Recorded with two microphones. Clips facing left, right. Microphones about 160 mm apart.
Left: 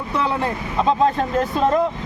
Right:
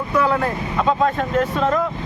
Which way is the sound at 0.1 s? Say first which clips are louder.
Right 3 dB; 25° left (ahead or behind).